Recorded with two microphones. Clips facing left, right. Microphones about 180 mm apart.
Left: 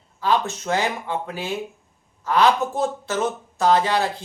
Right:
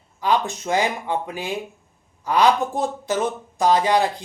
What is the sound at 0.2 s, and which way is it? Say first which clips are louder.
Speech: even; 15° right (ahead or behind).